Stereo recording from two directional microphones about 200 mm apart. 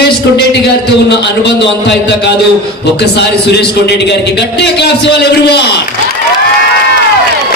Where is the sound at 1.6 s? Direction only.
60° left (ahead or behind).